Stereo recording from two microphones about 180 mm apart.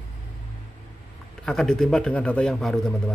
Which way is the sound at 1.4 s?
5° left (ahead or behind).